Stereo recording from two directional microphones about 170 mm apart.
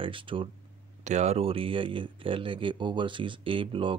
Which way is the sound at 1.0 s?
45° right (ahead or behind).